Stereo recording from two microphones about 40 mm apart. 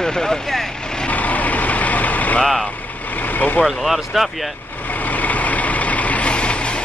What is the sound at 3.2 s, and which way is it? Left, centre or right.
Vehicle, left.